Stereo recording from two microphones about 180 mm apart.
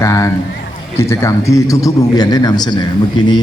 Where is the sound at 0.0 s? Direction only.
15° left (ahead or behind).